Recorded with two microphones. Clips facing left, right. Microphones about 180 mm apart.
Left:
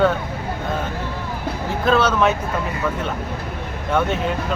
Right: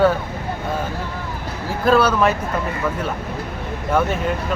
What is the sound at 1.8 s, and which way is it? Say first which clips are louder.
Speech: right 2 dB; 5° right (ahead or behind).